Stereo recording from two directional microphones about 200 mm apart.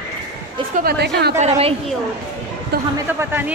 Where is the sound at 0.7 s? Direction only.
55° right (ahead or behind).